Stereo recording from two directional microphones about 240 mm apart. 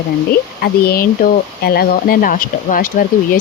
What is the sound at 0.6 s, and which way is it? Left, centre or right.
Speech, left.